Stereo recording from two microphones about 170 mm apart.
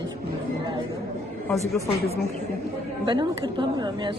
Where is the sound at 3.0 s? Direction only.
30° right (ahead or behind).